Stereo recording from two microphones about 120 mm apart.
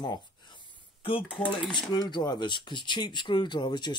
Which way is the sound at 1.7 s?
40° left (ahead or behind).